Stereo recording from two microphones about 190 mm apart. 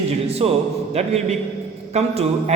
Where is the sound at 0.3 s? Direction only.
30° right (ahead or behind).